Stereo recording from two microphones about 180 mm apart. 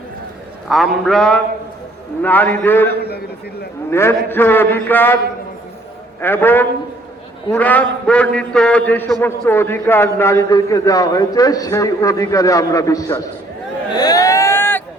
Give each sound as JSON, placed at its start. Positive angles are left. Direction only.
{"t": 0.7, "sound": "a man's voice", "side_deg": 0}
{"t": 2.9, "sound": "a man's voice", "side_deg": 60}
{"t": 3.8, "sound": "a man's voice", "side_deg": 15}
{"t": 13.9, "sound": "a sound", "side_deg": 20}